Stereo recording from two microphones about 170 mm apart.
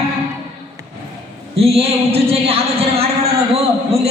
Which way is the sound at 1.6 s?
35° right (ahead or behind).